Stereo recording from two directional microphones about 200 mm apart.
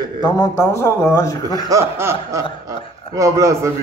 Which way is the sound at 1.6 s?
15° right (ahead or behind).